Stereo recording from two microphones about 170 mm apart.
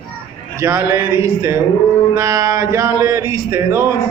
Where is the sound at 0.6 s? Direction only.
15° right (ahead or behind).